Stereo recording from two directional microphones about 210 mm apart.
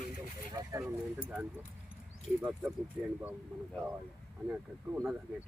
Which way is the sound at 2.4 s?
5° right (ahead or behind).